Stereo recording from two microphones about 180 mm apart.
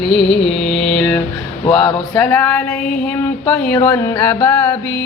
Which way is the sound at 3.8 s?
20° left (ahead or behind).